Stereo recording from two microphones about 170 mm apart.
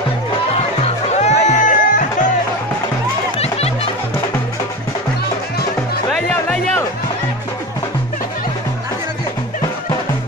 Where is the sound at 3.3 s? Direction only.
35° left (ahead or behind).